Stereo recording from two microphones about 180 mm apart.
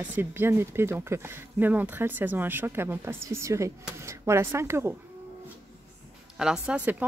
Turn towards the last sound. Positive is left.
turn(degrees=-5)  # may be behind; listen again after turning